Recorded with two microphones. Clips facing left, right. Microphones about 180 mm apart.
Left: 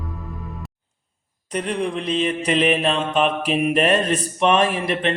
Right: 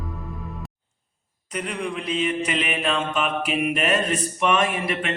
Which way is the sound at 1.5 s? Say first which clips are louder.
Left 5 dB; 35° left (ahead or behind).